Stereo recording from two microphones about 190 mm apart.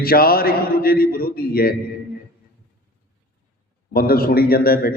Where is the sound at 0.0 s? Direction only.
50° left (ahead or behind).